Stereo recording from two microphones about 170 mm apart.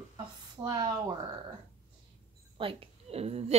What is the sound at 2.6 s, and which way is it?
Speech, 35° right (ahead or behind).